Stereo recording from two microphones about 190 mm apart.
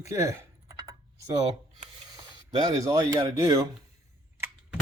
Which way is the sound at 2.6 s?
15° right (ahead or behind).